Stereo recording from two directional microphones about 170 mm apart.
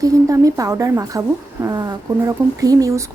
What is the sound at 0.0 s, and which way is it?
Speech, 20° right (ahead or behind).